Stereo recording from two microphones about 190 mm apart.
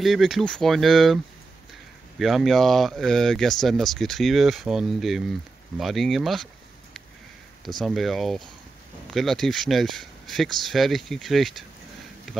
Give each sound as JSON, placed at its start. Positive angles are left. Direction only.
{"t": 0.0, "sound": "speech", "side_deg": 0}